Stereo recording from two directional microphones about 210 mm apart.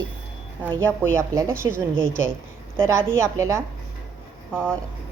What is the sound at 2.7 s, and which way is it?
Speech, 10° right (ahead or behind).